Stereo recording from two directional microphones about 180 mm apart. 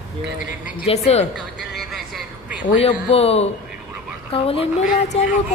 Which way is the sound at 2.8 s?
35° left (ahead or behind).